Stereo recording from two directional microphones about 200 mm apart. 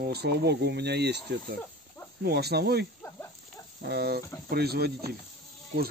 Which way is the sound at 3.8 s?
55° right (ahead or behind).